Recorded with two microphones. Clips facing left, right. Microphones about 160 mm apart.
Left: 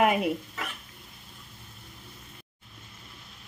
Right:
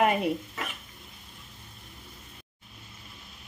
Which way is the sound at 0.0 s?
5° left (ahead or behind).